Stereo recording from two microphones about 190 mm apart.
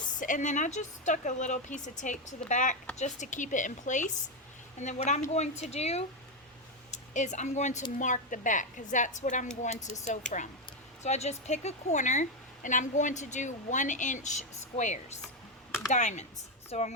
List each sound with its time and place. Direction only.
0.2 s a woman's voice: 40° left (ahead or behind)